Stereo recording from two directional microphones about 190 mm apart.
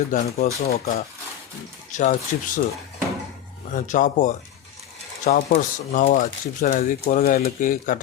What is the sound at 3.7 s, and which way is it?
Speech, 40° left (ahead or behind).